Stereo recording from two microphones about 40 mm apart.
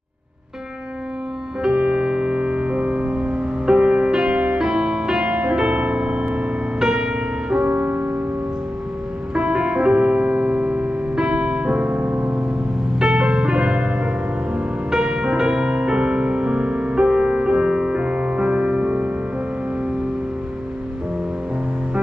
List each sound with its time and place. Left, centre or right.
1.6 s music: centre
6.8 s music: centre
7.6 s music: right
9.3 s music: right
11.9 s music: right
13.0 s music: right